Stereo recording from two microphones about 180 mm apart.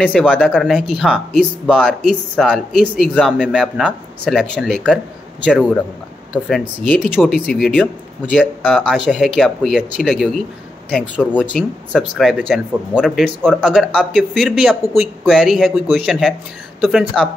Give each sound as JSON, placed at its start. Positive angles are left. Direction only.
{"t": 0.2, "sound": "speech", "side_deg": 0}
{"t": 1.1, "sound": "speech", "side_deg": 5}
{"t": 1.7, "sound": "speech", "side_deg": -5}
{"t": 6.8, "sound": "speech", "side_deg": 10}
{"t": 8.6, "sound": "speech", "side_deg": -5}
{"t": 11.5, "sound": "speech", "side_deg": 0}